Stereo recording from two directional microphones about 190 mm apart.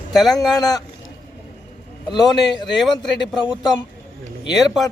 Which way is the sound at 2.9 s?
25° left (ahead or behind).